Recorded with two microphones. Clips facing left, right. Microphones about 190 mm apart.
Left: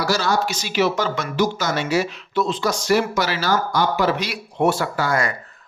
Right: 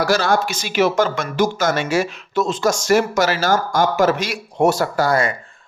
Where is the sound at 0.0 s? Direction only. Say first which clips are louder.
Right 3 dB; 55° right (ahead or behind).